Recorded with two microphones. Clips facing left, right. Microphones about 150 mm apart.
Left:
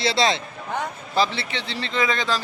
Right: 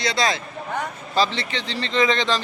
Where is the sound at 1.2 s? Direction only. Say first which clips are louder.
Right 1 dB; 10° left (ahead or behind).